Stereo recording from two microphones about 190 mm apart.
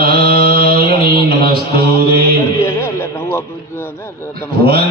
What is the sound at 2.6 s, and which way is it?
Radio, 15° left (ahead or behind).